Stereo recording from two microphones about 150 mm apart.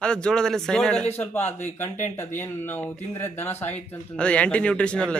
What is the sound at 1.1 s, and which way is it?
Speech, 15° left (ahead or behind).